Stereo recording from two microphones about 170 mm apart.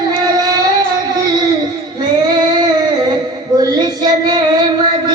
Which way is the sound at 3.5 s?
20° right (ahead or behind).